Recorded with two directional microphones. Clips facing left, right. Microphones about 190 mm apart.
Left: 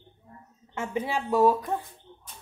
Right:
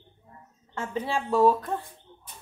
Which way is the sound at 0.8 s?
15° left (ahead or behind).